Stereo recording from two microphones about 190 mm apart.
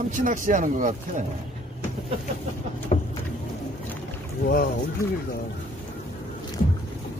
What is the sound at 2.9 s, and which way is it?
Vehicle, 35° left (ahead or behind).